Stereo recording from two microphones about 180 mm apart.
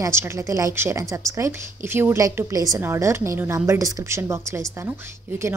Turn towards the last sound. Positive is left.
turn(degrees=-15)  # may be behind; listen again after turning